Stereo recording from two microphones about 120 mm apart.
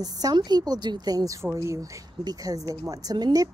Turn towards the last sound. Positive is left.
turn(degrees=-35)  # may be behind; listen again after turning